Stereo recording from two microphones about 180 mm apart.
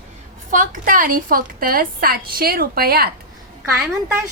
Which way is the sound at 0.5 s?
50° right (ahead or behind).